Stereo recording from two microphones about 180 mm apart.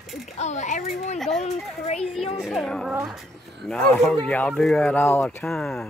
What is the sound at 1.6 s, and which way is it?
Speech, centre (ahead or behind).